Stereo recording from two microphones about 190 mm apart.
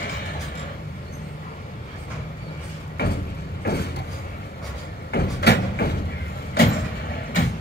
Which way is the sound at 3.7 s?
60° left (ahead or behind).